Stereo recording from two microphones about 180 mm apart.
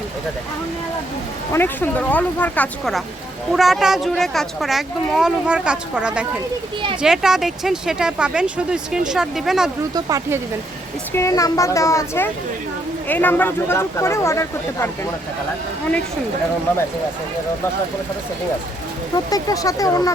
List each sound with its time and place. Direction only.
1.5 s speech: 10° left (ahead or behind)
9.9 s speech: 20° right (ahead or behind)
11.1 s speech: 15° left (ahead or behind)
16.7 s speech: 10° left (ahead or behind)
19.1 s speech: 20° left (ahead or behind)